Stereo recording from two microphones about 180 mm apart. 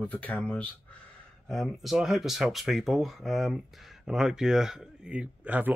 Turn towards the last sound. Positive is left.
turn(degrees=-10)  # may be behind; listen again after turning